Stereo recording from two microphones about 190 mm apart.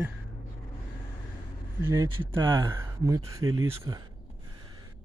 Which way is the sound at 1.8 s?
15° right (ahead or behind).